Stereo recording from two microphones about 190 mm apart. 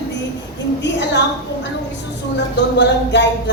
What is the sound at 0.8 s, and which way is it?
Speech, 65° left (ahead or behind).